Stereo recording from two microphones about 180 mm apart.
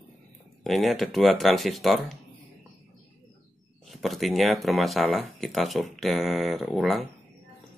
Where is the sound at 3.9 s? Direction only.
Centre (ahead or behind).